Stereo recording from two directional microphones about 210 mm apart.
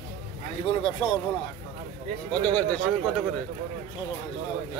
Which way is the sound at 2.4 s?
5° left (ahead or behind).